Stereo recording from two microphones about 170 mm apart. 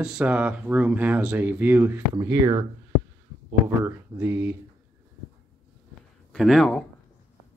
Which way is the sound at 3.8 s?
15° right (ahead or behind).